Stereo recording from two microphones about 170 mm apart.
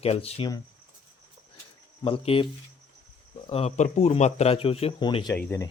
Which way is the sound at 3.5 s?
35° left (ahead or behind).